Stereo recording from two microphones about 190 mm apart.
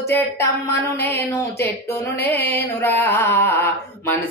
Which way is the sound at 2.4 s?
60° left (ahead or behind).